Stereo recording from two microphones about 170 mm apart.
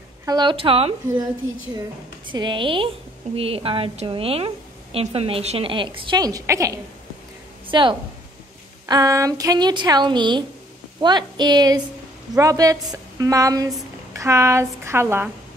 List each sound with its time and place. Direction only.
0.2 s a woman's voice: 25° right (ahead or behind)
2.3 s a woman's voice: 25° right (ahead or behind)
7.6 s a woman's voice: 30° right (ahead or behind)